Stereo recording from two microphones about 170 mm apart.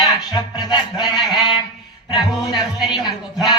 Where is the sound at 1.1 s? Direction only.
25° left (ahead or behind).